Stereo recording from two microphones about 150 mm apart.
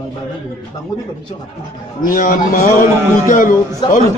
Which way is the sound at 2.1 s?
65° left (ahead or behind).